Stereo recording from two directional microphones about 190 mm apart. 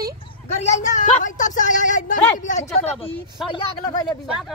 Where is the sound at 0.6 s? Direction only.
35° left (ahead or behind).